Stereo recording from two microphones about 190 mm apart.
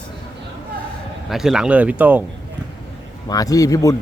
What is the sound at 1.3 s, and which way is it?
Speech, centre (ahead or behind).